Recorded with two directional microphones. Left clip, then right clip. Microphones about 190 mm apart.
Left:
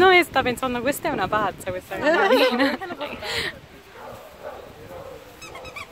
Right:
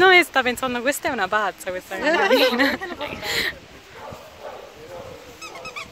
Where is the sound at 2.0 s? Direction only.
35° left (ahead or behind).